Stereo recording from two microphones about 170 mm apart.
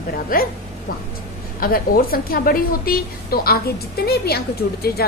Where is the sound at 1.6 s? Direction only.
60° left (ahead or behind).